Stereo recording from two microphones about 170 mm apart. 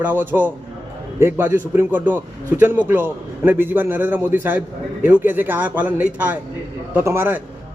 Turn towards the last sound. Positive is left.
turn(degrees=-15)  # may be behind; listen again after turning